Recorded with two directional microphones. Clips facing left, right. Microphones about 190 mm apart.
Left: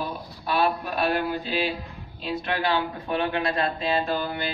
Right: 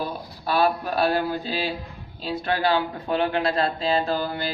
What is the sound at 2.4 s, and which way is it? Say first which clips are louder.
A man's voice: right 4 dB; 35° right (ahead or behind).